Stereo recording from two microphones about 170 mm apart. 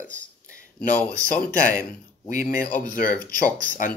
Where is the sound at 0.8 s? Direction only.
5° left (ahead or behind).